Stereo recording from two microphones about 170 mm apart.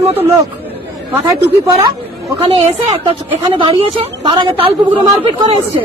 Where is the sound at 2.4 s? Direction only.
35° right (ahead or behind).